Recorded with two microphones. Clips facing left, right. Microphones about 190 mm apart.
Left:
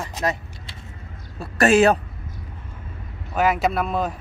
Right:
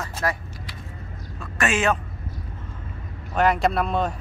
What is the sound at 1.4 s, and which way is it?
Speech, 35° left (ahead or behind).